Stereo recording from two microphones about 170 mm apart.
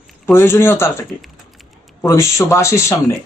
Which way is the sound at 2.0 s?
15° left (ahead or behind).